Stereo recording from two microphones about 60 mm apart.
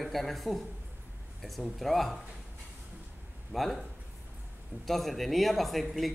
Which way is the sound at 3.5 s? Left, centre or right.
Centre.